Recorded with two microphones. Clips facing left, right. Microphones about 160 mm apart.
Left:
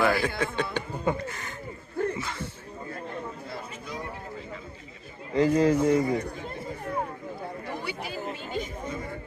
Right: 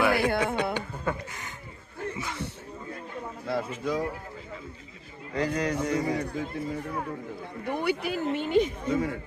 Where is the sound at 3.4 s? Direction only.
85° right.